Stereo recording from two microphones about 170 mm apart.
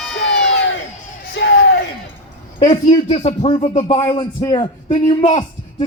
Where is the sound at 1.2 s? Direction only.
75° left (ahead or behind).